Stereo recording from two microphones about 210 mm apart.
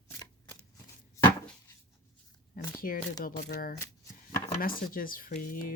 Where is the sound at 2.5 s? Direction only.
40° left (ahead or behind).